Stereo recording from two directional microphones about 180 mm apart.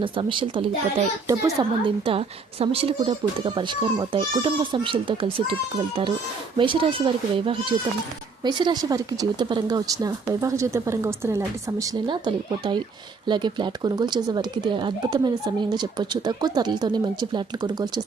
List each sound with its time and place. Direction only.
0.0 s speech: 30° right (ahead or behind)
6.6 s speech: 30° right (ahead or behind)